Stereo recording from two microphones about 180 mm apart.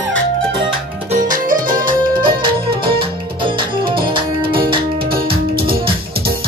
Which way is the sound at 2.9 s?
30° right (ahead or behind).